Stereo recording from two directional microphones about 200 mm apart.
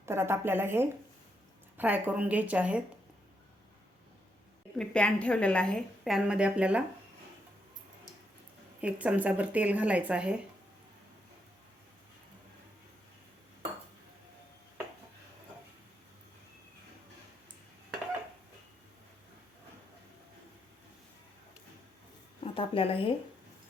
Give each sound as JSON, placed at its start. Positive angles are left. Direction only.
{"t": 0.0, "sound": "speech", "side_deg": -10}
{"t": 4.8, "sound": "a woman's voice", "side_deg": 5}
{"t": 8.8, "sound": "speech", "side_deg": -5}
{"t": 22.5, "sound": "speech", "side_deg": 25}